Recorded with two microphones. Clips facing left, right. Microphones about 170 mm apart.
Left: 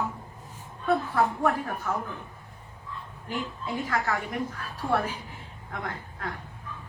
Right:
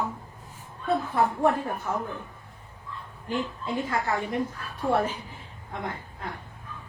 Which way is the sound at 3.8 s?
25° right (ahead or behind).